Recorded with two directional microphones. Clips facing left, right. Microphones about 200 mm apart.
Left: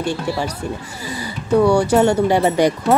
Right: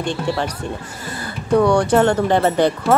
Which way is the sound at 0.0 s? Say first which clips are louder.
Even; 10° left (ahead or behind).